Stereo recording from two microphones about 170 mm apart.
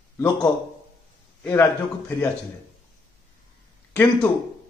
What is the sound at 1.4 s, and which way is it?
Speech, 15° left (ahead or behind).